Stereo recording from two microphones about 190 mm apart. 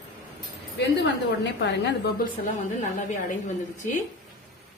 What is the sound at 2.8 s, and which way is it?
A woman's voice, 40° left (ahead or behind).